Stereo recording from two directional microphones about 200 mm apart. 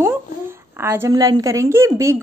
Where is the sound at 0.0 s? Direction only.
10° right (ahead or behind).